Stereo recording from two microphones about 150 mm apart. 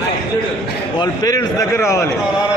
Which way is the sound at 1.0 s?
25° left (ahead or behind).